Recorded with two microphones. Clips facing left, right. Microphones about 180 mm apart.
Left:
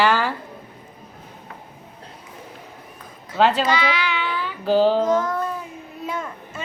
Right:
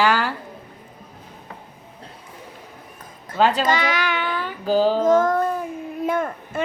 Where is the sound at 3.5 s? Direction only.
45° right (ahead or behind).